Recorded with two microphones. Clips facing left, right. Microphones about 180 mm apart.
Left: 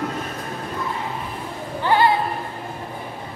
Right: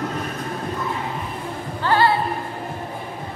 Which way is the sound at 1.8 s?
15° left (ahead or behind).